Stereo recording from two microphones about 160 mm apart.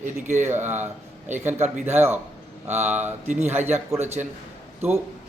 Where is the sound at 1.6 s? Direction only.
45° right (ahead or behind).